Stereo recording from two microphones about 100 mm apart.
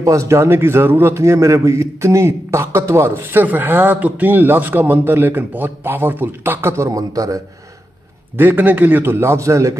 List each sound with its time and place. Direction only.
0.0 s a man's voice: 30° right (ahead or behind)
6.9 s a man's voice: 35° right (ahead or behind)
8.4 s a man's voice: 20° right (ahead or behind)